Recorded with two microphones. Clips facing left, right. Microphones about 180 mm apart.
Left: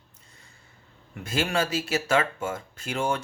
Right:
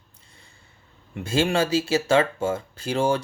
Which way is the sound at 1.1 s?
30° right (ahead or behind).